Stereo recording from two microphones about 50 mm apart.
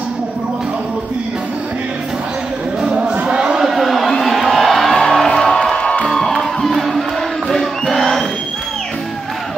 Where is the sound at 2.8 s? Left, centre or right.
Right.